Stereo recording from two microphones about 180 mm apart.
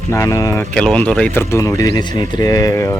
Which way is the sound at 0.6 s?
5° left (ahead or behind).